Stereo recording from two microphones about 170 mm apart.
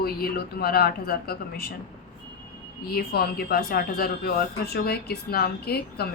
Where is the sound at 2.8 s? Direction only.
65° left (ahead or behind).